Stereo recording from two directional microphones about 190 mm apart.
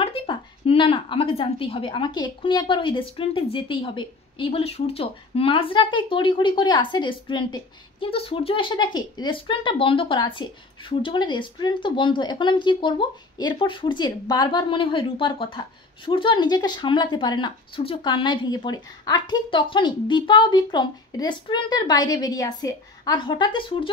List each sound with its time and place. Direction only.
0.0 s a woman's voice: 30° left (ahead or behind)